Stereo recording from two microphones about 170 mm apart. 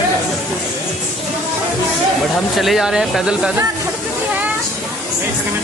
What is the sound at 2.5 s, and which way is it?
Speech, centre (ahead or behind).